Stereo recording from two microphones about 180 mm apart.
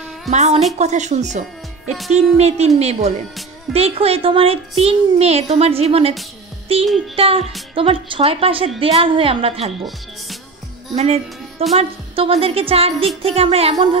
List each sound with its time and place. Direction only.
0.3 s a child's voice: 40° right (ahead or behind)
6.7 s music: 30° right (ahead or behind)
7.2 s a child's voice: 30° right (ahead or behind)
11.0 s a child's voice: 35° right (ahead or behind)